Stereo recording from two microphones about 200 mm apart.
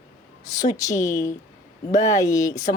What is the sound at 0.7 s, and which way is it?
Speech, 15° left (ahead or behind).